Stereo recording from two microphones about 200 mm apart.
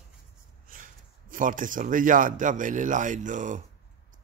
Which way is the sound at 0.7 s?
45° right (ahead or behind).